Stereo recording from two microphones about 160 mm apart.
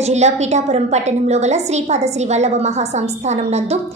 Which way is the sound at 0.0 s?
45° right (ahead or behind).